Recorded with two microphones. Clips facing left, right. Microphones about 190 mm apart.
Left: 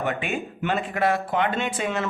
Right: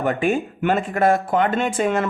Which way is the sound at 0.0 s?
45° right (ahead or behind).